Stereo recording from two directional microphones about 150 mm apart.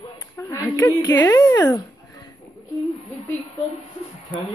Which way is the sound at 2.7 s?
Centre (ahead or behind).